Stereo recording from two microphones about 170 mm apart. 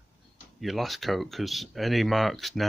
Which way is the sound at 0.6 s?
Centre (ahead or behind).